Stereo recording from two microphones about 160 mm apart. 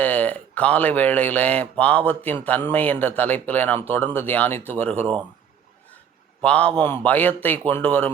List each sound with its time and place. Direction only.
0.0 s speech: 10° left (ahead or behind)
6.4 s speech: 10° left (ahead or behind)